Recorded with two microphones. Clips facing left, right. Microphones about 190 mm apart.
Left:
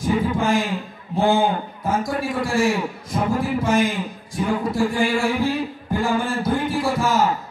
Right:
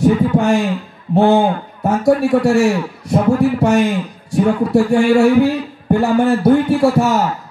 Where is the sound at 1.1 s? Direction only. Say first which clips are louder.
Right 6 dB; 70° right (ahead or behind).